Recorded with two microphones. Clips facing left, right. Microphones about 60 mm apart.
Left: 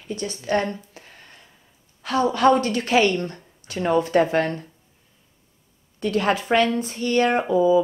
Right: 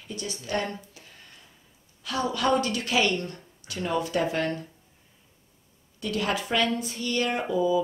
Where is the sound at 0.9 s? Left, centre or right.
Left.